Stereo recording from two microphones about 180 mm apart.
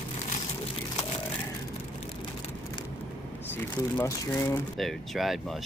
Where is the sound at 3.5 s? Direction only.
15° left (ahead or behind).